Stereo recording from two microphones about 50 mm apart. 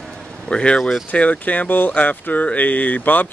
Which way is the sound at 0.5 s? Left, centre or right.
Left.